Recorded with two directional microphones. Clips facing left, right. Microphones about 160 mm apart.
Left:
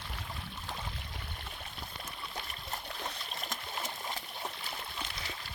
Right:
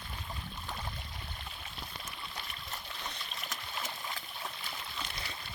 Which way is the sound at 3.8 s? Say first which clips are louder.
Left 1 dB; 30° left (ahead or behind).